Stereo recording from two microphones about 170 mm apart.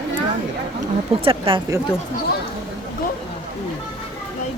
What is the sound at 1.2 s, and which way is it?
Speech, 30° right (ahead or behind).